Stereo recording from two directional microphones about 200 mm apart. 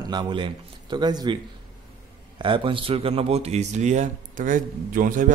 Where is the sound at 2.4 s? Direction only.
25° right (ahead or behind).